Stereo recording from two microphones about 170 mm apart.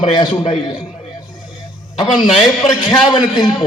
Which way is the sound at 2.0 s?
25° left (ahead or behind).